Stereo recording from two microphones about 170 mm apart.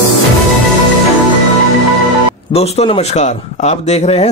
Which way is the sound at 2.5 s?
40° left (ahead or behind).